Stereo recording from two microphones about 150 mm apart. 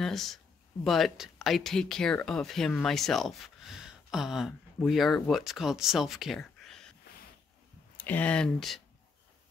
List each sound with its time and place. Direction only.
0.0 s a sound: centre (ahead or behind)
0.8 s speech: centre (ahead or behind)
8.0 s speech: 10° left (ahead or behind)